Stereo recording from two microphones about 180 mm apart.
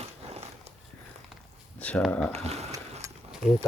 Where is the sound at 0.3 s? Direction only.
35° right (ahead or behind).